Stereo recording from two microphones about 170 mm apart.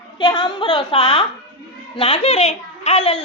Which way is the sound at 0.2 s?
25° left (ahead or behind).